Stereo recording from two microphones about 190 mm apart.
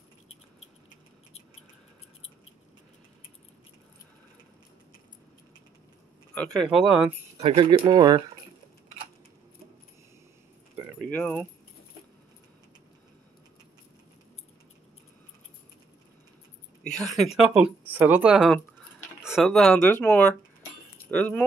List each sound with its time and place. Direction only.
6.3 s speech: 5° left (ahead or behind)
7.3 s speech: 25° right (ahead or behind)
11.1 s keys jangling: 5° left (ahead or behind)
16.8 s a woman's voice: 5° left (ahead or behind)